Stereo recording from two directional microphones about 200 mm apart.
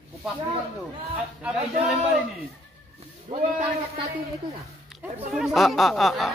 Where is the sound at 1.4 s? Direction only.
5° right (ahead or behind).